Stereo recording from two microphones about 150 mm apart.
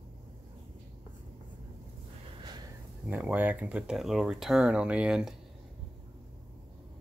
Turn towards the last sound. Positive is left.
turn(degrees=-5)  # may be behind; listen again after turning